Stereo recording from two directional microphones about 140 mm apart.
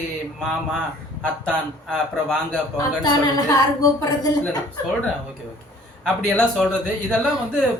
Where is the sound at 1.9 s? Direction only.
5° left (ahead or behind).